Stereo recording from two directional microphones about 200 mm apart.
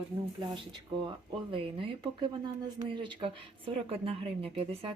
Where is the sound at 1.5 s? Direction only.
25° right (ahead or behind).